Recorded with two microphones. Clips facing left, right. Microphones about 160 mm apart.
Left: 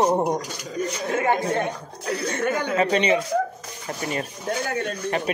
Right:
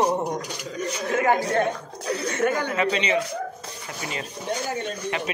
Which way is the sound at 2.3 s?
35° left (ahead or behind).